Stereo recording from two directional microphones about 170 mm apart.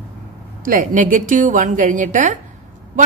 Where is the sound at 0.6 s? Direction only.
50° right (ahead or behind).